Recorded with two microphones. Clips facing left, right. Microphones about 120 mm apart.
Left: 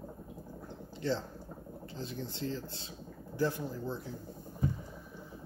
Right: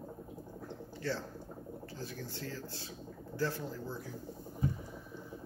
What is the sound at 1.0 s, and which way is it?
Speech, 20° left (ahead or behind).